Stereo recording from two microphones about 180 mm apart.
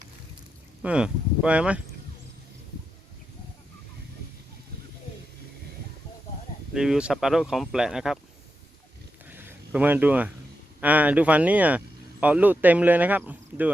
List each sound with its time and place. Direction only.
0.8 s speech: 5° right (ahead or behind)
6.7 s speech: 5° right (ahead or behind)
9.3 s a sound: 10° right (ahead or behind)
10.8 s speech: 10° right (ahead or behind)